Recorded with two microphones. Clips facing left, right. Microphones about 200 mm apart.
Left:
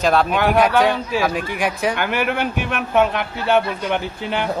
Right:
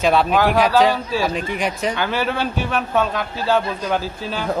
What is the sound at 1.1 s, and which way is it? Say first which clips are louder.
Speech: left 1 dB; 5° left (ahead or behind).